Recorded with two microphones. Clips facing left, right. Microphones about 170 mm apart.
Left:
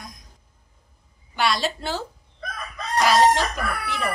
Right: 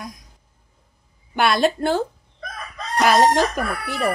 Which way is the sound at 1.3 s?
55° right (ahead or behind).